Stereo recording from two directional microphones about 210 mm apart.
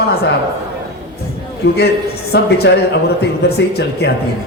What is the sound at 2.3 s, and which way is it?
A man's voice, 50° left (ahead or behind).